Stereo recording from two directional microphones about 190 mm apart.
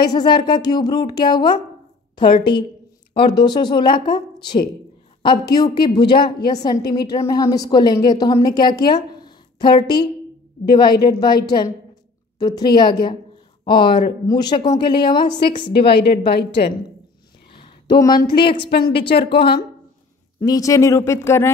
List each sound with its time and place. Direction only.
0.0 s a woman's voice: 20° left (ahead or behind)
16.3 s a woman's voice: 60° left (ahead or behind)
17.5 s a sound: 25° left (ahead or behind)
20.3 s speech: 20° left (ahead or behind)